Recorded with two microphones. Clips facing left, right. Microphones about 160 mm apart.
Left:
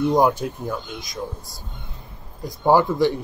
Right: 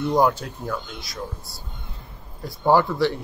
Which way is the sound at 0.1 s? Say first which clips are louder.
Left 2 dB; 20° left (ahead or behind).